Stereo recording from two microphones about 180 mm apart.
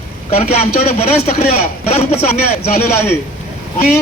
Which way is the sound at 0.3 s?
35° left (ahead or behind).